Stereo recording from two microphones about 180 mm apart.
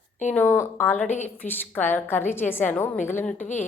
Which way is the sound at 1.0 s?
40° left (ahead or behind).